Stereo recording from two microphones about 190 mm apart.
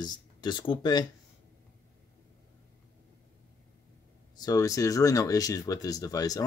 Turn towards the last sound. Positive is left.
turn(degrees=20)  # may be behind; listen again after turning